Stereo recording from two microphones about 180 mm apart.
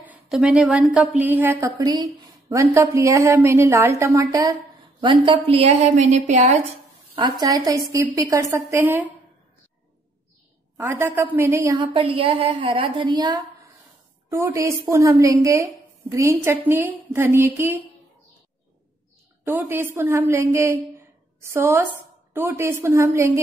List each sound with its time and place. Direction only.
0.0 s a woman's voice: 5° right (ahead or behind); by 6.7 s 40° right (ahead or behind)
7.2 s a woman's voice: 25° right (ahead or behind)
10.8 s a woman's voice: 15° right (ahead or behind)
11.9 s a woman's voice: 30° right (ahead or behind); by 17.8 s 10° right (ahead or behind)
19.4 s a woman's voice: 10° right (ahead or behind)